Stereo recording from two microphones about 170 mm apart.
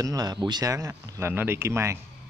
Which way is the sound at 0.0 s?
20° right (ahead or behind).